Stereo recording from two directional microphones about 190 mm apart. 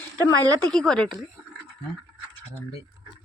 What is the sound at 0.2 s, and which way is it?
Speech, 20° right (ahead or behind).